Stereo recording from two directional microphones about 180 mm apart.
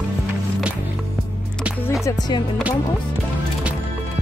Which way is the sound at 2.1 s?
20° left (ahead or behind).